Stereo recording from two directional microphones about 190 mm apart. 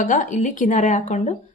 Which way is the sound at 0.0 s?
40° left (ahead or behind).